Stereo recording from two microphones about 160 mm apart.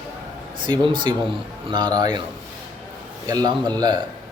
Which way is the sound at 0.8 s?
30° right (ahead or behind).